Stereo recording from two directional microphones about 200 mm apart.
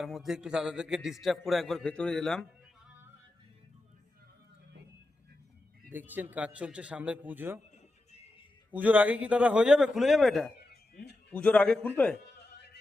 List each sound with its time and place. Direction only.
0.0 s a man's voice: centre (ahead or behind)
5.9 s a man's voice: 10° right (ahead or behind)
8.7 s a man's voice: 10° right (ahead or behind)
10.7 s a sound: 55° left (ahead or behind)
11.3 s a man's voice: 5° left (ahead or behind)
12.1 s music: 55° left (ahead or behind)